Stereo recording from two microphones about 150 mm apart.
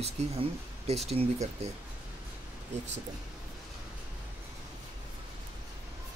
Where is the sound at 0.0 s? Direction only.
45° right (ahead or behind).